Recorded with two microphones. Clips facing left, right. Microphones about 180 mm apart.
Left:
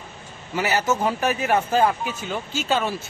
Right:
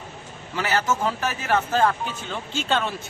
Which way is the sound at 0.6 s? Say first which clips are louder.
Left 2 dB; 10° left (ahead or behind).